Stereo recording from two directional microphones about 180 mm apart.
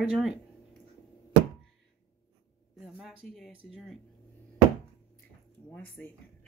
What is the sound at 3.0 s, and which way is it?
Speech, centre (ahead or behind).